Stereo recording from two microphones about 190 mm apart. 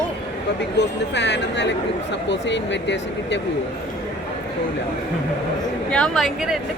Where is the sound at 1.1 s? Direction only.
65° left (ahead or behind).